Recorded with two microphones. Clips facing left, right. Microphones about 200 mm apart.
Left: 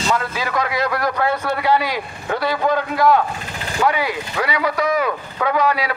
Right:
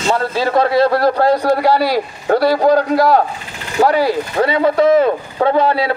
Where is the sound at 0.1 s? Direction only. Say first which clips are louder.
Right 8 dB; 30° right (ahead or behind).